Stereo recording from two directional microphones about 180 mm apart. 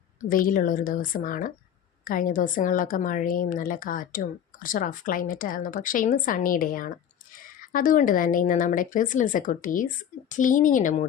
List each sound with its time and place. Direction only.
0.3 s speech: 50° left (ahead or behind)